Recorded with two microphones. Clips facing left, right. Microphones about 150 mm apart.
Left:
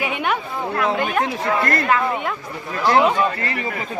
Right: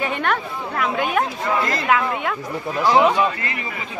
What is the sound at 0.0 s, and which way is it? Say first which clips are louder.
A woman's voice: even; 5° left (ahead or behind).